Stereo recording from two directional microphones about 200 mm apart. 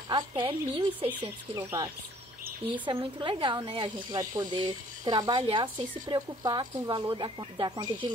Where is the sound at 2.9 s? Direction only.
25° right (ahead or behind).